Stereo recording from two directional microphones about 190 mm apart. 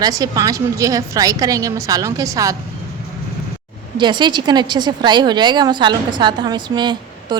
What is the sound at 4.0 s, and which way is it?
A woman's voice, 25° right (ahead or behind).